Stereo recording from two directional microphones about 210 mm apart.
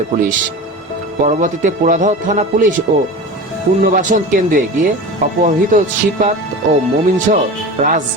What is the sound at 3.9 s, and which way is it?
Speech, 40° right (ahead or behind).